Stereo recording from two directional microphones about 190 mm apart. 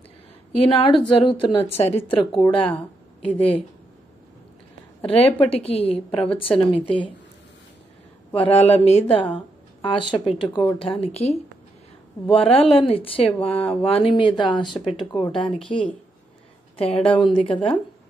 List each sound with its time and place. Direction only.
0.7 s speech: 25° left (ahead or behind)
5.0 s speech: 30° left (ahead or behind)
8.3 s speech: 30° left (ahead or behind)
12.3 s speech: 30° left (ahead or behind)
16.7 s speech: 30° left (ahead or behind)